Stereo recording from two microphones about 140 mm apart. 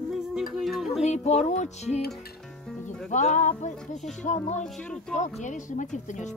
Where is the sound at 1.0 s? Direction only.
55° left (ahead or behind).